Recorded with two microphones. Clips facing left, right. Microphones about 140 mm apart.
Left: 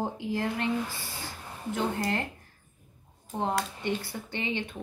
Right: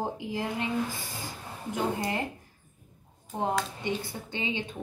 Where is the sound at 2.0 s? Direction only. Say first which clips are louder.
Left 1 dB; 15° right (ahead or behind).